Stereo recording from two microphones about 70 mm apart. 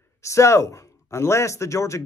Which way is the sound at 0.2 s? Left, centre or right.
Left.